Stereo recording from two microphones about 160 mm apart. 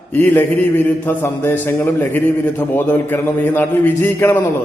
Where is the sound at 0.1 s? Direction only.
10° left (ahead or behind).